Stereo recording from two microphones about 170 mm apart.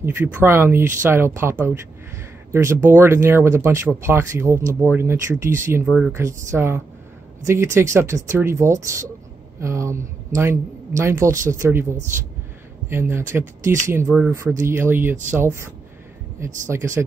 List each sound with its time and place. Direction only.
0.0 s speech: 15° right (ahead or behind)
5.9 s speech: 5° right (ahead or behind)
6.1 s speech: 15° right (ahead or behind)